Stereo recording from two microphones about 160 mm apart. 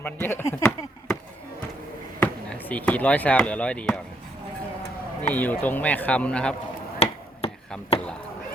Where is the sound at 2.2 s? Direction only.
10° left (ahead or behind).